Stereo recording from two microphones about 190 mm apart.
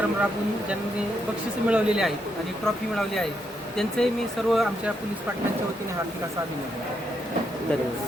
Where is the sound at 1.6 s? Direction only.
5° right (ahead or behind).